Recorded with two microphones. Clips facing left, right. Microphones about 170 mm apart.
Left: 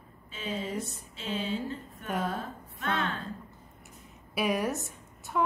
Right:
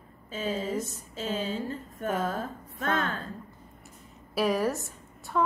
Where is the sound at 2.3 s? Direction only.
40° right (ahead or behind).